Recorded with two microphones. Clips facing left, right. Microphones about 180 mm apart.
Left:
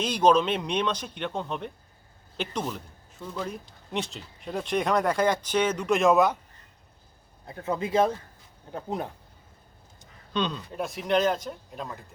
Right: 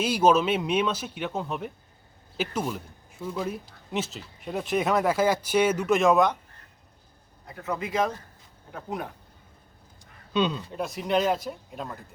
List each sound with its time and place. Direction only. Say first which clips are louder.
0.0 s speech: even; 5° right (ahead or behind)
7.4 s speech: left 2 dB; 30° left (ahead or behind)
10.3 s speech: right 3 dB; 5° right (ahead or behind)